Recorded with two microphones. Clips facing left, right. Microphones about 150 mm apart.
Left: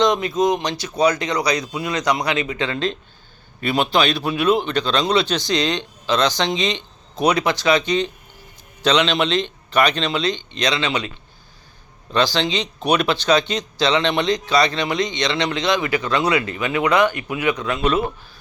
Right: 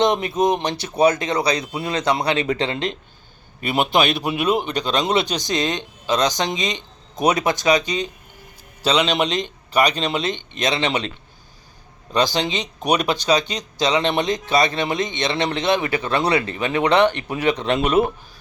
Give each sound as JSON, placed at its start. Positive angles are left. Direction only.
{"t": 0.0, "sound": "speech", "side_deg": -25}
{"t": 3.9, "sound": "speech", "side_deg": -20}
{"t": 10.1, "sound": "speech", "side_deg": -20}
{"t": 12.1, "sound": "speech", "side_deg": -20}
{"t": 12.8, "sound": "speech", "side_deg": -40}
{"t": 13.1, "sound": "speech", "side_deg": -10}